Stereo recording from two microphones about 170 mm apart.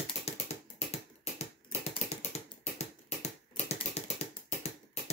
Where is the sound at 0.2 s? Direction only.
40° left (ahead or behind).